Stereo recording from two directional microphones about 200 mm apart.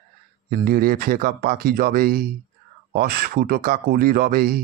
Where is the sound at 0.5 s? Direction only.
45° right (ahead or behind).